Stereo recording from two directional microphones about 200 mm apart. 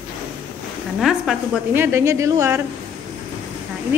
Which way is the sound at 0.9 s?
Centre (ahead or behind).